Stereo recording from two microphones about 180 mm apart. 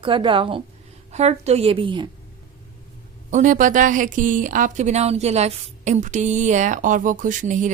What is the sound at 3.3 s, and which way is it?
Speech, 45° right (ahead or behind).